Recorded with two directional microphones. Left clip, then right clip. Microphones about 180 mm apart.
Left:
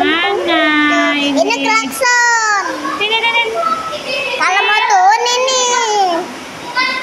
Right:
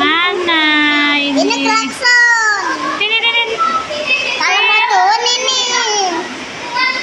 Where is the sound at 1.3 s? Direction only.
40° left (ahead or behind).